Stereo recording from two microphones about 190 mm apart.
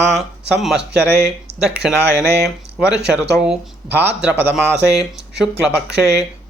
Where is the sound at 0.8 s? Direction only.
60° right (ahead or behind).